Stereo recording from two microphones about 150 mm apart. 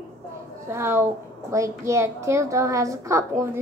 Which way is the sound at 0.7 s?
15° right (ahead or behind).